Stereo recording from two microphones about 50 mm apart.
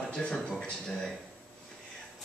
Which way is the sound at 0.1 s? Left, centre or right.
Centre.